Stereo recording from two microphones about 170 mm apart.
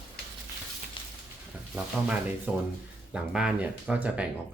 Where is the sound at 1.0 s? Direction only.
30° left (ahead or behind).